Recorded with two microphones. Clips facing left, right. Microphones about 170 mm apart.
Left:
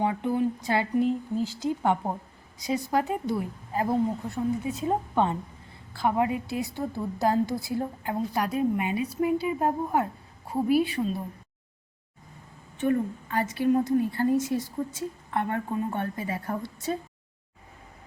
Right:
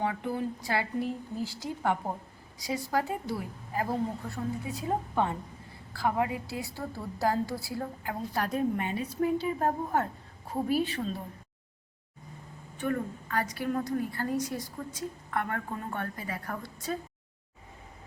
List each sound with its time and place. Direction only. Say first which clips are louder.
0.0 s a woman's voice: left 6 dB; 20° left (ahead or behind)
12.7 s a woman's voice: left 6 dB; 25° left (ahead or behind)